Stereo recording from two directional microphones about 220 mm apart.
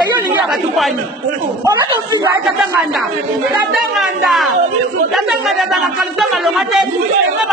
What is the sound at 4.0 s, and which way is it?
Speech, centre (ahead or behind).